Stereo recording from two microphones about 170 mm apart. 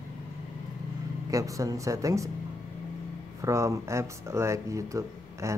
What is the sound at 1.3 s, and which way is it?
Speech, 20° right (ahead or behind).